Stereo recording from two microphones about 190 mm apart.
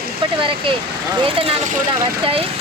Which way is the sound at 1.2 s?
30° right (ahead or behind).